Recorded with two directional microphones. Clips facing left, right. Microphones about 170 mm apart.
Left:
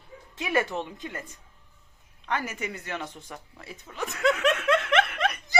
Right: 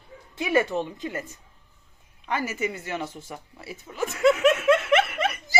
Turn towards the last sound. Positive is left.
turn(degrees=-5)  # may be behind; listen again after turning